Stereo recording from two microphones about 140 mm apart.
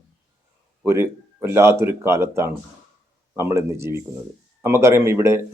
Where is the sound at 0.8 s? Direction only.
20° right (ahead or behind).